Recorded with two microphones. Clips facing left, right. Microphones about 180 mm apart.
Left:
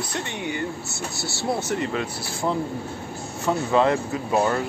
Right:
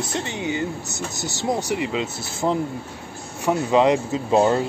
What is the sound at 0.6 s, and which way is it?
Speech, 20° right (ahead or behind).